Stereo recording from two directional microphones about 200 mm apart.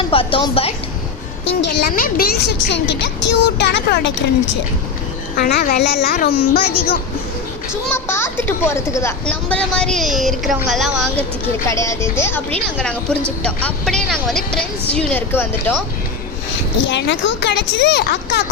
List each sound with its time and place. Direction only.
0.0 s speech: 25° left (ahead or behind)
1.8 s speech: 50° left (ahead or behind)
5.4 s a child's voice: 50° left (ahead or behind)
6.6 s speech: 30° left (ahead or behind)
7.9 s a child's voice: 10° left (ahead or behind)
11.6 s a child's voice: 15° left (ahead or behind)
16.8 s speech: 65° left (ahead or behind)